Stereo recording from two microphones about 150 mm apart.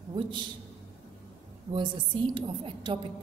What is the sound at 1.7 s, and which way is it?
A woman's voice, 35° right (ahead or behind).